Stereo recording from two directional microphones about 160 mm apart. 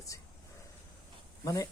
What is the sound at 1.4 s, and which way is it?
Speech, 20° left (ahead or behind).